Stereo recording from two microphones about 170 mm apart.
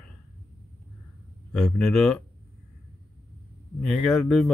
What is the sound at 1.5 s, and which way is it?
Speech, 5° left (ahead or behind).